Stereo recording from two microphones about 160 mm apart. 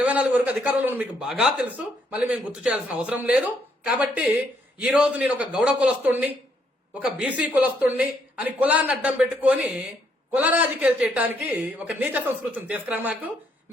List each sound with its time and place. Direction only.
0.0 s speech: 10° right (ahead or behind)